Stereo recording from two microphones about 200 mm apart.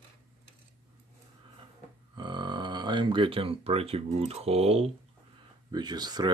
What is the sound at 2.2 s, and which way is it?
Speech, 25° right (ahead or behind).